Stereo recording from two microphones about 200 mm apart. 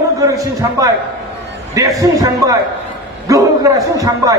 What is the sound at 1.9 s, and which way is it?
A man's voice, 15° right (ahead or behind).